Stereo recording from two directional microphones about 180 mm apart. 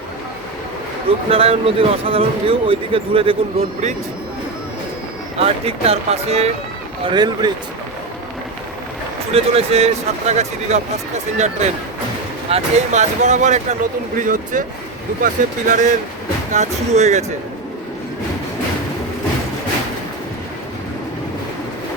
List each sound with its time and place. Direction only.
1.3 s speech: 30° right (ahead or behind)
5.4 s speech: 35° right (ahead or behind)
7.0 s speech: 25° right (ahead or behind)
9.3 s speech: 35° right (ahead or behind)